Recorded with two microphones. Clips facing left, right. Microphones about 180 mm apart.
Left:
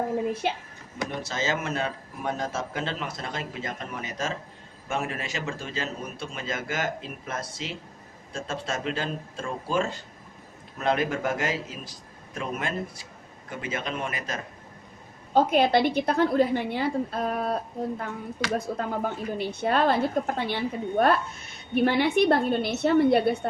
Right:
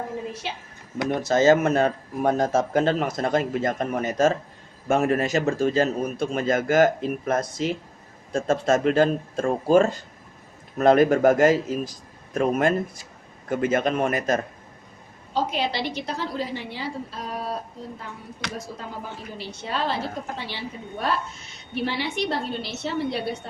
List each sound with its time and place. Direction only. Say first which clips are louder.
0.4 s a woman's voice: left 5 dB; 50° left (ahead or behind)
1.3 s a man's voice: right 14 dB; 45° right (ahead or behind)
15.3 s a woman's voice: left 5 dB; 55° left (ahead or behind)